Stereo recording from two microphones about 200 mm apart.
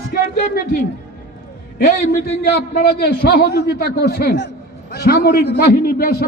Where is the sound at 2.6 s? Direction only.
50° left (ahead or behind).